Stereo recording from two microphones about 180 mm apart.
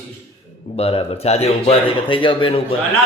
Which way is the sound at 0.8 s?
35° left (ahead or behind).